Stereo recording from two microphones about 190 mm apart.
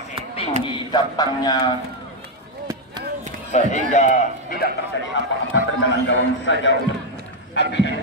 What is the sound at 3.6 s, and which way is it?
A man's voice, 40° left (ahead or behind).